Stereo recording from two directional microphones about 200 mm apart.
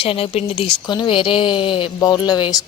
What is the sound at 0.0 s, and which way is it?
Speech, 30° left (ahead or behind).